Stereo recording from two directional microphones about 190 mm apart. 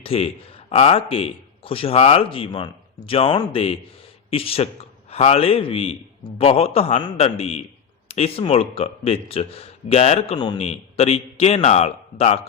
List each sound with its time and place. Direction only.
0.0 s speech: 30° left (ahead or behind)